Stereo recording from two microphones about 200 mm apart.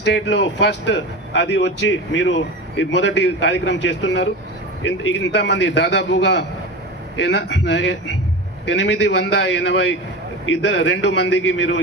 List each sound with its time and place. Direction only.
0.1 s speech: 60° left (ahead or behind)